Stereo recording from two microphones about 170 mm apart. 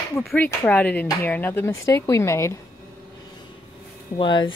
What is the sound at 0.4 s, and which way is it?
Speech, 10° left (ahead or behind).